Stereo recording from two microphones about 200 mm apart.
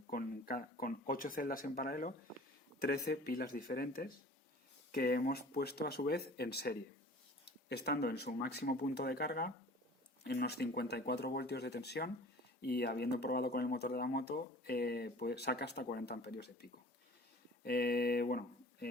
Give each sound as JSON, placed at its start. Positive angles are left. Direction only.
{"t": 0.1, "sound": "speech", "side_deg": 45}